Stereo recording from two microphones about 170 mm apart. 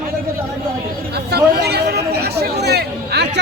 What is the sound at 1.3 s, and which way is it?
Speech, 70° right (ahead or behind).